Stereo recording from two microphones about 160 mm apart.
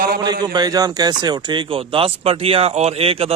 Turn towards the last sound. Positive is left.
turn(degrees=-35)  # may be behind; listen again after turning